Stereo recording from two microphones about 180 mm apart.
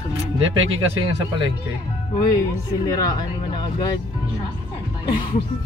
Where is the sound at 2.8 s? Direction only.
20° left (ahead or behind).